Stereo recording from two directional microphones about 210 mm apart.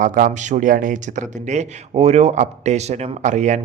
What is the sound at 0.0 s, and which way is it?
Speech, 40° right (ahead or behind).